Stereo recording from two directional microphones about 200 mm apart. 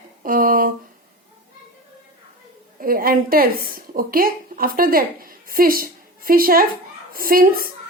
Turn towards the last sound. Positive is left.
turn(degrees=-45)  # may be behind; listen again after turning